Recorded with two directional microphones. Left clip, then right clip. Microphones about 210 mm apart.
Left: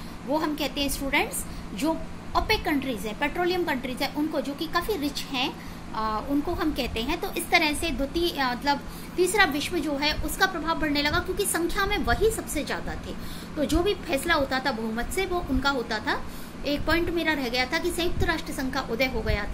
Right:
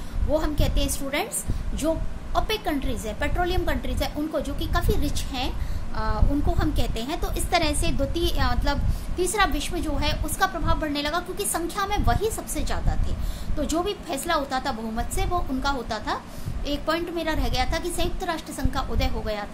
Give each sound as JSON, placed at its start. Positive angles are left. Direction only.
{"t": 0.3, "sound": "a woman's voice", "side_deg": -15}
{"t": 6.6, "sound": "a woman's voice", "side_deg": -15}